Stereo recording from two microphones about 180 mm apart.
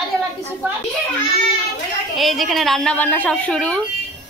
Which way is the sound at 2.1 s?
Centre (ahead or behind).